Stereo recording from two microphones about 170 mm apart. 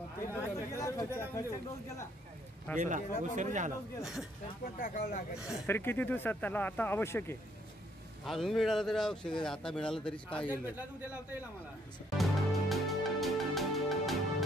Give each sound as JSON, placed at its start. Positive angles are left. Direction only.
{"t": 0.2, "sound": "a sound", "side_deg": 20}
{"t": 2.7, "sound": "speech", "side_deg": 10}
{"t": 3.0, "sound": "speech", "side_deg": 50}
{"t": 3.3, "sound": "speech", "side_deg": -45}
{"t": 4.0, "sound": "speech", "side_deg": 0}
{"t": 4.7, "sound": "speech", "side_deg": 55}
{"t": 5.7, "sound": "speech", "side_deg": 15}
{"t": 8.3, "sound": "speech", "side_deg": 0}
{"t": 10.5, "sound": "a man's voice", "side_deg": -10}
{"t": 12.2, "sound": "music", "side_deg": 0}